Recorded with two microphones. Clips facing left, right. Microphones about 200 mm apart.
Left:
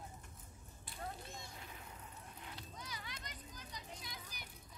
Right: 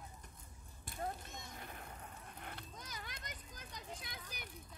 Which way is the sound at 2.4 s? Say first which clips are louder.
Right 1 dB; 55° right (ahead or behind).